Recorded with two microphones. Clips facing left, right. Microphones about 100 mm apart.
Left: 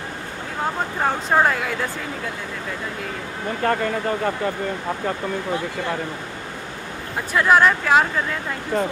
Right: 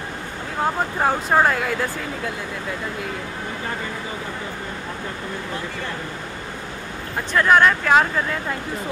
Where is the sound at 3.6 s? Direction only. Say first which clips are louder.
Left 11 dB; 65° left (ahead or behind).